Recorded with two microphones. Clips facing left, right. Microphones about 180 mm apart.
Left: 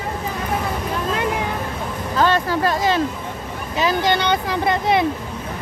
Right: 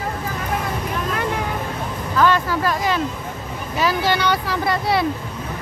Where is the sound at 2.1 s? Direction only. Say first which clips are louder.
Even; 30° left (ahead or behind).